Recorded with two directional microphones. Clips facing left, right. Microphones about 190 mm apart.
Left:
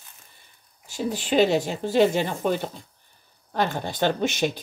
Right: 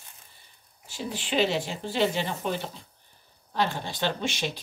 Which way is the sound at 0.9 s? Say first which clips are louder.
Left 6 dB; 45° left (ahead or behind).